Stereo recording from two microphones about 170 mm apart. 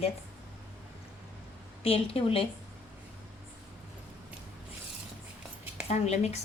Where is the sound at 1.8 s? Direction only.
35° left (ahead or behind).